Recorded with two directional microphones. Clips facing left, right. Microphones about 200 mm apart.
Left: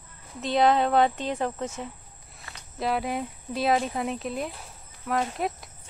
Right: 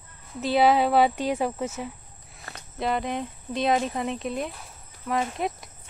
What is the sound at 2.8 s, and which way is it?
Speech, 5° left (ahead or behind).